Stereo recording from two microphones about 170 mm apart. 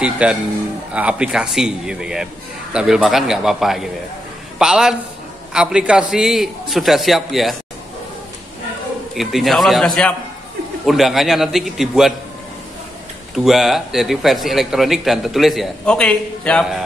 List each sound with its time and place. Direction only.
0.0 s a man's voice: 5° right (ahead or behind)
9.1 s a man's voice: centre (ahead or behind)
13.3 s a man's voice: centre (ahead or behind)